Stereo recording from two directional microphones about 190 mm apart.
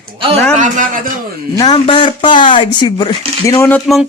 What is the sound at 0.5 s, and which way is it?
Speech, 40° right (ahead or behind).